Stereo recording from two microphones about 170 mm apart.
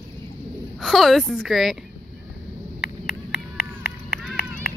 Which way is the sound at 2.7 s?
70° left (ahead or behind).